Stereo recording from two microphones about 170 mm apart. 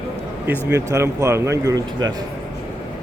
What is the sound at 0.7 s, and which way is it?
Speech, 15° right (ahead or behind).